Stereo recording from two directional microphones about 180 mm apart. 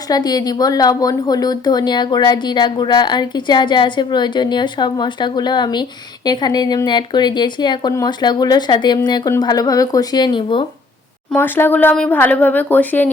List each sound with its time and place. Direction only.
0.1 s a woman's voice: 20° left (ahead or behind)
11.3 s speech: 10° left (ahead or behind)